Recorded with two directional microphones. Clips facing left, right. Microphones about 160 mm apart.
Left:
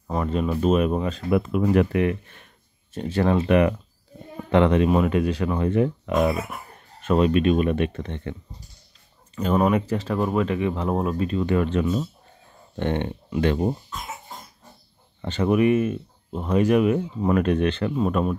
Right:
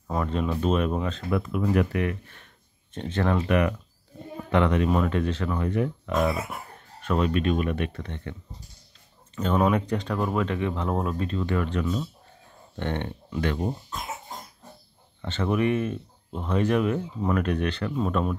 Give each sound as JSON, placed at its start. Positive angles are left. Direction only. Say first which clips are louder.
{"t": 0.1, "sound": "speech", "louder": "left 3 dB", "side_deg": 5}
{"t": 1.4, "sound": "speech", "louder": "left 3 dB", "side_deg": 25}
{"t": 2.9, "sound": "speech", "louder": "left 4 dB", "side_deg": 5}
{"t": 3.3, "sound": "speech", "louder": "left 5 dB", "side_deg": 25}
{"t": 5.6, "sound": "speech", "louder": "left 5 dB", "side_deg": 25}
{"t": 9.3, "sound": "speech", "louder": "left 2 dB", "side_deg": 5}
{"t": 11.4, "sound": "speech", "louder": "left 5 dB", "side_deg": 20}
{"t": 15.2, "sound": "speech", "louder": "left 5 dB", "side_deg": 15}
{"t": 17.3, "sound": "speech", "louder": "left 5 dB", "side_deg": 25}
{"t": 17.9, "sound": "speech", "louder": "left 3 dB", "side_deg": 10}